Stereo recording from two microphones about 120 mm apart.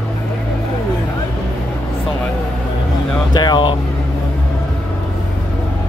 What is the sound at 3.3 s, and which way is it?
Air conditioning, 40° left (ahead or behind).